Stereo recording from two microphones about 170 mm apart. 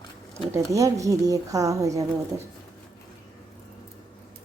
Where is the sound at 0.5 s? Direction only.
20° right (ahead or behind).